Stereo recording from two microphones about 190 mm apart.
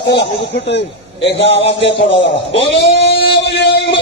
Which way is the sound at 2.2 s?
70° left (ahead or behind).